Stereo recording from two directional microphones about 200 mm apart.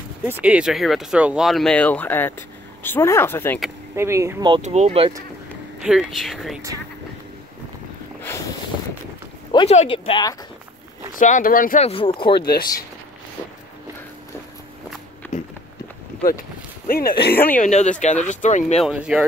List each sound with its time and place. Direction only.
0.4 s speech: 5° right (ahead or behind); by 3.6 s 10° left (ahead or behind)
3.9 s speech: 15° right (ahead or behind)
4.6 s speech: 35° right (ahead or behind)
5.1 s speech: 5° right (ahead or behind)
8.2 s snort: 10° left (ahead or behind)
9.5 s speech: 25° left (ahead or behind)
11.1 s speech: 40° left (ahead or behind)
11.8 s speech: 25° left (ahead or behind)
12.4 s speech: 50° left (ahead or behind)
16.8 s speech: 45° left (ahead or behind)
17.6 s speech: 35° left (ahead or behind)
18.9 s speech: 5° right (ahead or behind)